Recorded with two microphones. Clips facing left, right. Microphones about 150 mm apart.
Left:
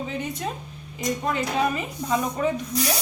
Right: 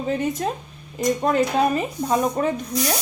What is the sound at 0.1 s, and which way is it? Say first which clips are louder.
A woman's voice: right 6 dB; 45° right (ahead or behind).